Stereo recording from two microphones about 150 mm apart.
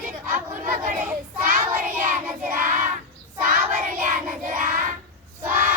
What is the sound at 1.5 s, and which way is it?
Child singing, 65° right (ahead or behind).